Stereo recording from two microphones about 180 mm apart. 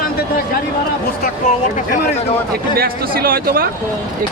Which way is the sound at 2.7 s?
55° right (ahead or behind).